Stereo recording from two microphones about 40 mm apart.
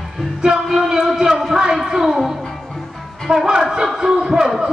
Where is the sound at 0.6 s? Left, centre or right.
Centre.